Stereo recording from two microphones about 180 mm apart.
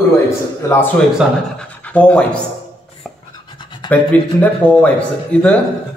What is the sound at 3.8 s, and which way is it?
A man's voice, 10° left (ahead or behind).